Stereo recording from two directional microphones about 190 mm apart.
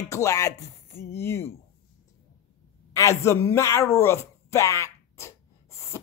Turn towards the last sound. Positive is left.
turn(degrees=15)  # may be behind; listen again after turning